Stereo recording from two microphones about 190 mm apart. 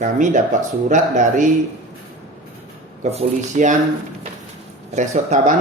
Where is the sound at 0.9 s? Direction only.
40° right (ahead or behind).